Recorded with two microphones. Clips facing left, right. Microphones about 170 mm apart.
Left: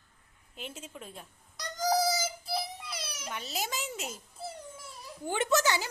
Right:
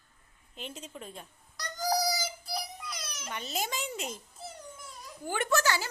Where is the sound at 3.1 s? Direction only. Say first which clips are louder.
Even; 10° left (ahead or behind).